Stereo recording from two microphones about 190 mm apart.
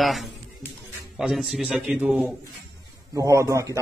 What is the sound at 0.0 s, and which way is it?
Music, centre (ahead or behind).